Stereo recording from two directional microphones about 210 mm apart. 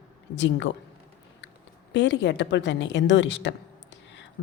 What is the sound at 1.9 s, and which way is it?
A woman's voice, 55° left (ahead or behind).